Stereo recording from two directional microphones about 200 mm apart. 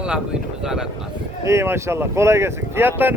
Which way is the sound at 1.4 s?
15° right (ahead or behind).